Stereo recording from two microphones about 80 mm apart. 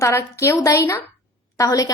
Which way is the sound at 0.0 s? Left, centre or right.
Left.